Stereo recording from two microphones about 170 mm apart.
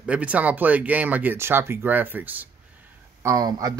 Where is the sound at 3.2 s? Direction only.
20° right (ahead or behind).